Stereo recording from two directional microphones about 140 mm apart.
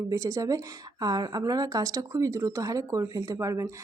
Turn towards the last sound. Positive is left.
turn(degrees=-20)  # may be behind; listen again after turning